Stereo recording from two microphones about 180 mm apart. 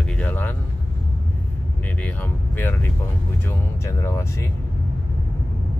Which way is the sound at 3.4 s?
15° left (ahead or behind).